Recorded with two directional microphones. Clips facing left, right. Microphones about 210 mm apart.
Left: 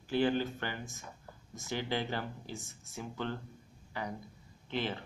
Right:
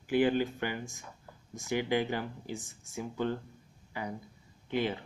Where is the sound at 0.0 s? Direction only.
15° right (ahead or behind).